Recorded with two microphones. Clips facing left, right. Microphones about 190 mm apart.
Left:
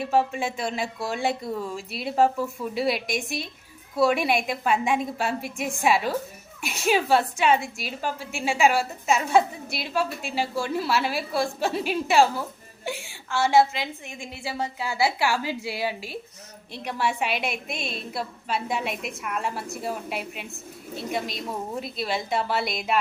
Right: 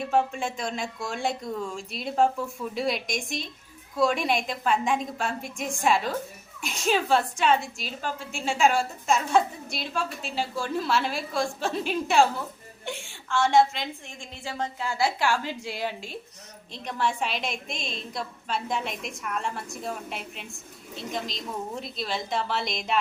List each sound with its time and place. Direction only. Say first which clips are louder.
0.0 s a woman's voice: left 2 dB; 5° left (ahead or behind)